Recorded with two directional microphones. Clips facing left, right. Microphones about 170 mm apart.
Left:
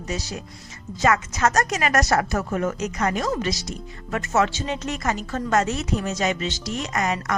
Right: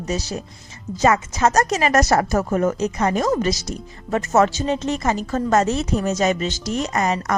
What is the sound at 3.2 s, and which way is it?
A woman's voice, 45° right (ahead or behind).